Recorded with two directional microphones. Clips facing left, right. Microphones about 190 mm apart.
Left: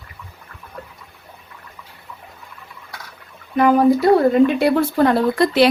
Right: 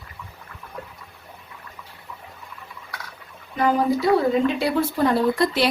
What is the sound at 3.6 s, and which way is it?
Speech, 60° left (ahead or behind).